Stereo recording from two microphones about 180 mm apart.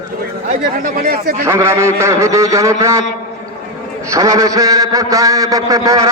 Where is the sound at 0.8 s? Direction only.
55° right (ahead or behind).